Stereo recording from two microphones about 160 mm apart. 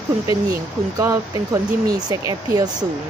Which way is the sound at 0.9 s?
20° right (ahead or behind).